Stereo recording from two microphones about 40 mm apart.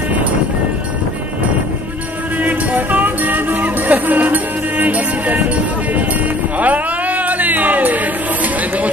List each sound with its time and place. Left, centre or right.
2.4 s music: right
6.6 s music: right